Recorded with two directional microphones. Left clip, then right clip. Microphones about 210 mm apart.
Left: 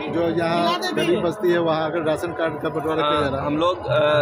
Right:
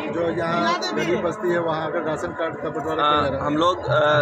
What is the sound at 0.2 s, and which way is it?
A man's voice, 45° left (ahead or behind).